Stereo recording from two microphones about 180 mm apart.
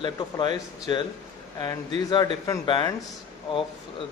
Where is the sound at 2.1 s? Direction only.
25° left (ahead or behind).